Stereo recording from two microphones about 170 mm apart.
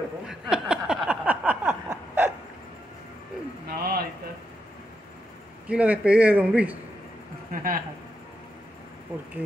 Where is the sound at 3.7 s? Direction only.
65° right (ahead or behind).